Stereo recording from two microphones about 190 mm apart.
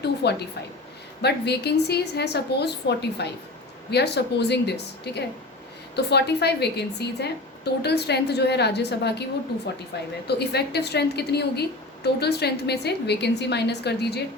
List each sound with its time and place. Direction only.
0.0 s a woman's voice: 60° left (ahead or behind)
10.2 s a woman's voice: 60° left (ahead or behind)